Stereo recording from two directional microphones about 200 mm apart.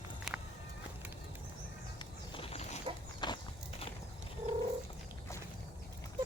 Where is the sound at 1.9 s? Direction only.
25° left (ahead or behind).